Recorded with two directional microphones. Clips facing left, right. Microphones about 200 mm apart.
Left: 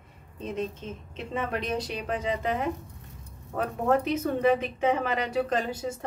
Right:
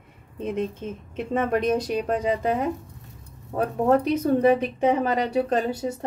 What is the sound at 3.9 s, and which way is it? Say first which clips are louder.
Speech: right 5 dB; 35° right (ahead or behind).